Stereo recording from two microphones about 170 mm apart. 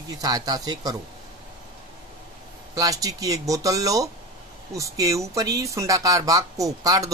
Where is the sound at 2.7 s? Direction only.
20° right (ahead or behind).